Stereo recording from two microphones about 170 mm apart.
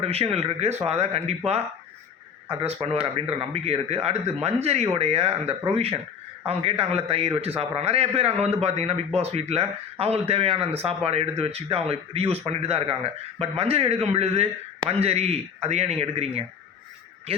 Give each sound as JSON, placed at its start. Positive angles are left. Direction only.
{"t": 0.0, "sound": "a man's voice", "side_deg": -35}
{"t": 2.5, "sound": "a man's voice", "side_deg": -30}